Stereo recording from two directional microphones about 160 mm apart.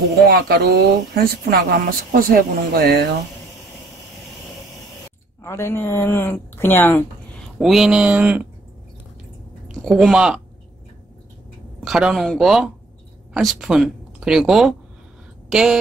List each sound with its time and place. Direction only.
0.2 s speech: 80° right
5.4 s a woman's voice: 15° left (ahead or behind)
7.5 s speech: centre (ahead or behind)
9.8 s speech: centre (ahead or behind)
11.8 s speech: 5° right (ahead or behind)